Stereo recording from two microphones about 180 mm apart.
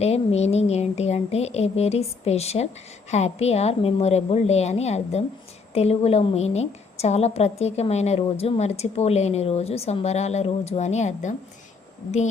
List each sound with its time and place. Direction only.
0.0 s a woman's voice: 35° left (ahead or behind)